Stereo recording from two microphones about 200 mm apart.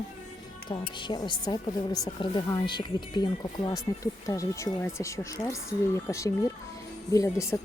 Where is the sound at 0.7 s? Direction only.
25° left (ahead or behind).